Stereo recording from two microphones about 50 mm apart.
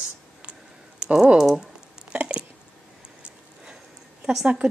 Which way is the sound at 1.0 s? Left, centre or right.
Centre.